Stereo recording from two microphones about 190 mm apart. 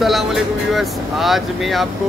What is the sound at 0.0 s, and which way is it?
Speech, centre (ahead or behind).